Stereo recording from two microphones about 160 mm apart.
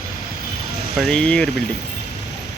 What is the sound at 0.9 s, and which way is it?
Speech, 5° left (ahead or behind).